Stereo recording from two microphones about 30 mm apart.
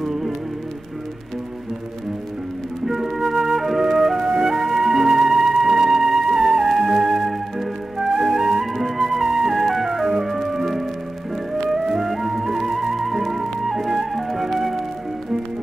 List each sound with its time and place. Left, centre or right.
0.0 s music: centre
2.9 s flute: centre
3.9 s music: centre
4.2 s music: right
8.1 s flute: centre
8.7 s music: centre